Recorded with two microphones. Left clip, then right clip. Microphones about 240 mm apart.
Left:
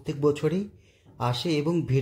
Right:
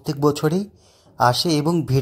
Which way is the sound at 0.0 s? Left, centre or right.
Right.